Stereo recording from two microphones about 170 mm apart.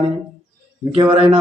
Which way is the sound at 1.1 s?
35° right (ahead or behind).